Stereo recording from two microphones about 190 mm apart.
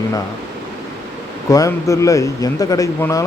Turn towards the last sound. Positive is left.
turn(degrees=15)  # may be behind; listen again after turning